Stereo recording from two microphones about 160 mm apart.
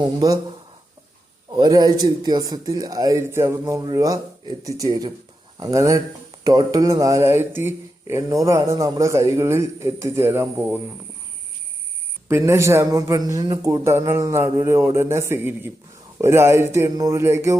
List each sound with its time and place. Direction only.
0.0 s speech: 25° right (ahead or behind)
1.5 s speech: 25° right (ahead or behind)
12.3 s speech: 15° right (ahead or behind)